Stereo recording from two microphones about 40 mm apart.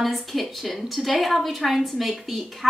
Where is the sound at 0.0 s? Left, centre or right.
Centre.